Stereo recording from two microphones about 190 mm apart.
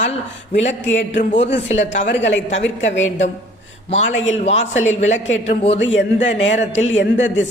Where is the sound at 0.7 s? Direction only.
75° left (ahead or behind).